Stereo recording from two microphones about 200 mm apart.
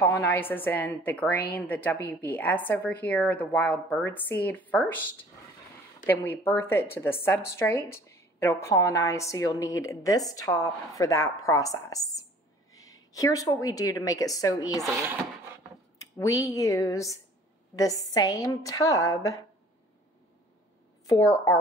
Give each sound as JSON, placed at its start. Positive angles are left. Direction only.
{"t": 0.0, "sound": "a woman's voice", "side_deg": 10}
{"t": 6.0, "sound": "a woman's voice", "side_deg": 10}
{"t": 16.2, "sound": "a woman's voice", "side_deg": 15}
{"t": 18.1, "sound": "a woman's voice", "side_deg": 20}
{"t": 21.1, "sound": "a woman's voice", "side_deg": 15}